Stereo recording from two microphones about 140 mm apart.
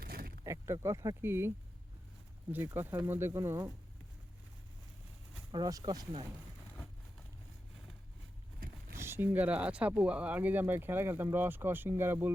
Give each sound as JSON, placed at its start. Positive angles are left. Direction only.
{"t": 0.0, "sound": "a sound", "side_deg": -90}
{"t": 0.4, "sound": "speech", "side_deg": -20}
{"t": 5.5, "sound": "speech", "side_deg": -30}
{"t": 9.0, "sound": "speech", "side_deg": -15}